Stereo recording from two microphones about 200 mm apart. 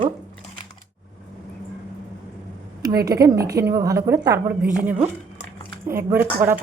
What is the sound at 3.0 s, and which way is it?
A woman's voice, 15° right (ahead or behind).